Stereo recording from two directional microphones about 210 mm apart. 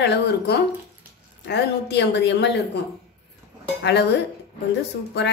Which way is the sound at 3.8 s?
55° left (ahead or behind).